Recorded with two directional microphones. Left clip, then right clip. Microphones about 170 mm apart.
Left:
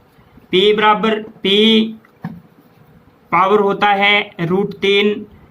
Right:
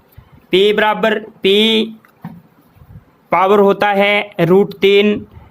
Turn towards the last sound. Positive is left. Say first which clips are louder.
# right 3 dB
turn(degrees=-60)  # may be behind; listen again after turning